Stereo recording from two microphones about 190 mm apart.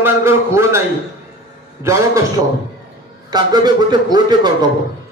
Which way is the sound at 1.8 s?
15° right (ahead or behind).